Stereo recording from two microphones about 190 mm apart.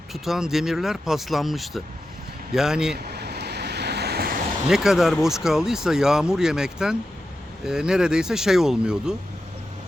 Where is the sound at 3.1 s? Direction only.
60° right (ahead or behind).